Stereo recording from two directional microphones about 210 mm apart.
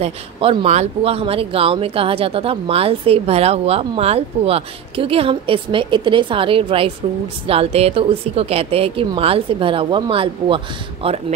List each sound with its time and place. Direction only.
0.0 s speech: 25° right (ahead or behind)